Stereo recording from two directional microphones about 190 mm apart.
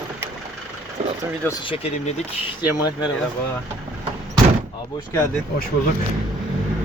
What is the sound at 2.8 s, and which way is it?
Speech, 20° left (ahead or behind).